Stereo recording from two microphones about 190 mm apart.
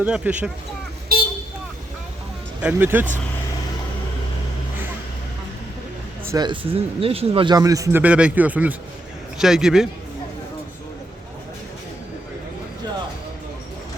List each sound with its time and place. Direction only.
0.0 s speech: 5° right (ahead or behind)
2.6 s speech: 10° right (ahead or behind)
6.3 s a man's voice: 25° right (ahead or behind)
8.0 s a man's voice: 5° right (ahead or behind)